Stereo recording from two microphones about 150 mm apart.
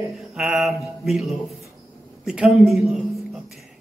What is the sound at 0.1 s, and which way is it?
Speech, centre (ahead or behind).